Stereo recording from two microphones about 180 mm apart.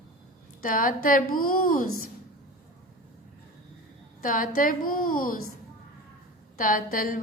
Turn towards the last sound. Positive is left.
turn(degrees=50)  # may be behind; listen again after turning